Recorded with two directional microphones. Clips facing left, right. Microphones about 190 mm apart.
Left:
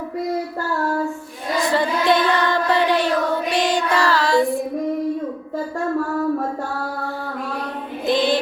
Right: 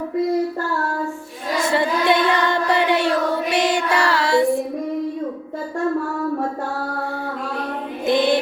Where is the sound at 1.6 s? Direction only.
25° right (ahead or behind).